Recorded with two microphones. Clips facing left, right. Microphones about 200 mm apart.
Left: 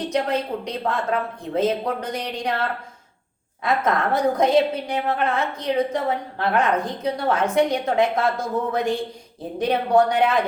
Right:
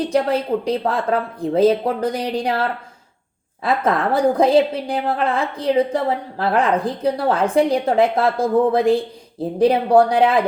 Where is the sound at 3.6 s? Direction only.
30° right (ahead or behind).